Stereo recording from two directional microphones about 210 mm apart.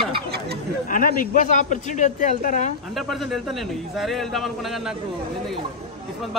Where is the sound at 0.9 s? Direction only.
40° left (ahead or behind).